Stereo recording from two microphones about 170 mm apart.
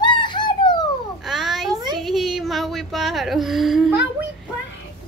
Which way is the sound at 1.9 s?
Centre (ahead or behind).